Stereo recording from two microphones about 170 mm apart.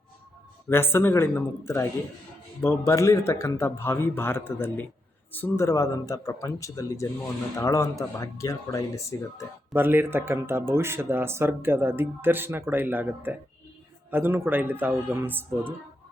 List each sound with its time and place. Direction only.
0.7 s speech: 15° left (ahead or behind)
9.7 s speech: 10° right (ahead or behind)